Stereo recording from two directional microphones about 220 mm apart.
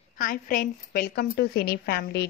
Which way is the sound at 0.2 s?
40° left (ahead or behind).